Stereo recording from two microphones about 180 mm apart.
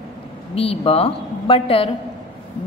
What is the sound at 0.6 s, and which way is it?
A woman's voice, 35° left (ahead or behind).